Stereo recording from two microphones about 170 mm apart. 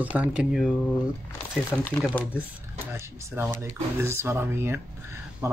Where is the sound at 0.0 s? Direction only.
10° right (ahead or behind).